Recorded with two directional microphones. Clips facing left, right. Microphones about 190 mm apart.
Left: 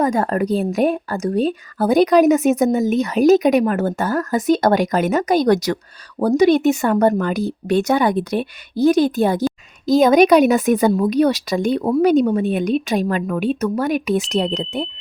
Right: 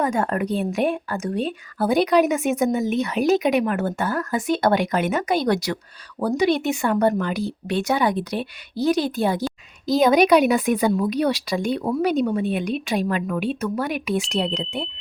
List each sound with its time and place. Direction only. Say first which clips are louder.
0.0 s a woman's voice: left 4 dB; 35° left (ahead or behind)